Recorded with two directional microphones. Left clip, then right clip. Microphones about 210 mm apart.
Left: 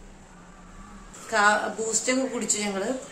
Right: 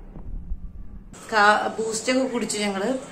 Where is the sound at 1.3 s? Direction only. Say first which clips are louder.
Right 3 dB; centre (ahead or behind).